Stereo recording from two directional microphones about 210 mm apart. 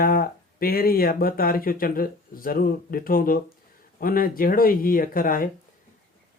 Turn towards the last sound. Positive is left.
turn(degrees=40)  # may be behind; listen again after turning